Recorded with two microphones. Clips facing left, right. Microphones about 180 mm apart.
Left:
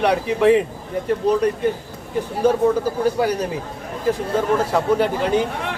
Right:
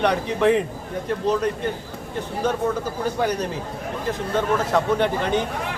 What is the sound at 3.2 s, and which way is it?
Speech, 10° left (ahead or behind).